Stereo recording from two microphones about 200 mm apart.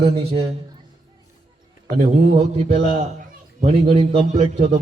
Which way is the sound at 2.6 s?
30° right (ahead or behind).